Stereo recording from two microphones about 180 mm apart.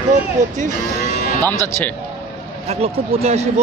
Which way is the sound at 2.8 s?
35° right (ahead or behind).